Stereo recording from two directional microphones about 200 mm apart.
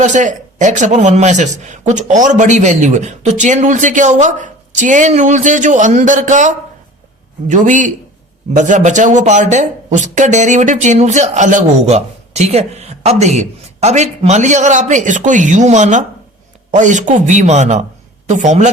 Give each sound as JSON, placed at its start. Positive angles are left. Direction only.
{"t": 0.0, "sound": "speech", "side_deg": -40}